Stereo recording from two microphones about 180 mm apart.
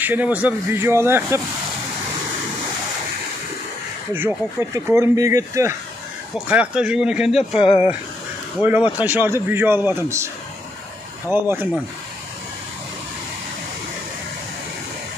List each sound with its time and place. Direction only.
0.0 s speech: 10° right (ahead or behind)
4.1 s speech: 10° right (ahead or behind)
7.5 s speech: 30° left (ahead or behind)
8.5 s speech: 10° right (ahead or behind)